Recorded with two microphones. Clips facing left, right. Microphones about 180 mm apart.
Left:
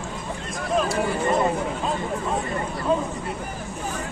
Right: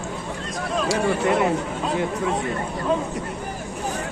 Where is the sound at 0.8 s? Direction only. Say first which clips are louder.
Right 2 dB; 75° right (ahead or behind).